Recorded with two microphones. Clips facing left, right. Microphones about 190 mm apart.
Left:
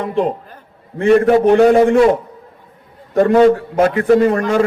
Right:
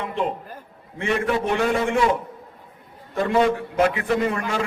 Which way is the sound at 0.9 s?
45° left (ahead or behind).